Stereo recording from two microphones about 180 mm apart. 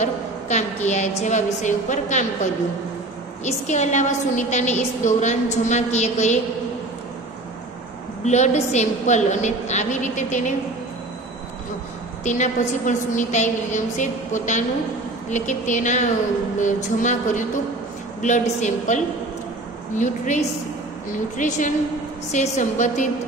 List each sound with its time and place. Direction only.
0.0 s a woman's voice: 40° left (ahead or behind)
8.3 s a woman's voice: 40° left (ahead or behind)
12.3 s a woman's voice: 45° left (ahead or behind)
20.0 s a woman's voice: 40° left (ahead or behind)